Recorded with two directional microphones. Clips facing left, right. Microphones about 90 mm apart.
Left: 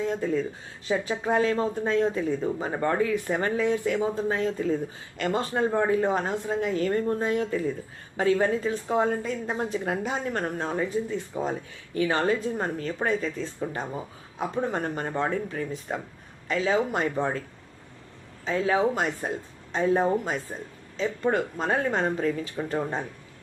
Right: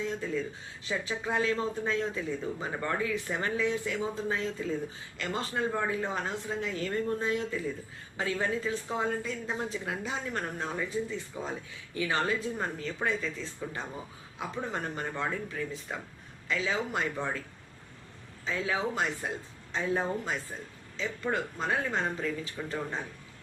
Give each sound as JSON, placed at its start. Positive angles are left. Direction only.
{"t": 0.0, "sound": "speech", "side_deg": 45}
{"t": 18.4, "sound": "speech", "side_deg": 35}
{"t": 21.0, "sound": "speech", "side_deg": 35}